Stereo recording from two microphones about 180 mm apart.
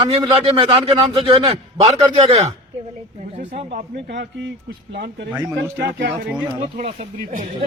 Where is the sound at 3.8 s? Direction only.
60° right (ahead or behind).